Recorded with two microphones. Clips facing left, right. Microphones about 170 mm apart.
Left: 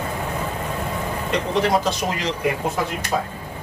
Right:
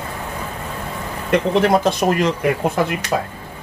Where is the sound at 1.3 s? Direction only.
55° right (ahead or behind).